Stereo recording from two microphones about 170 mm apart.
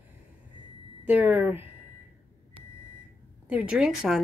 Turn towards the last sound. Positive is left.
turn(degrees=-5)  # may be behind; listen again after turning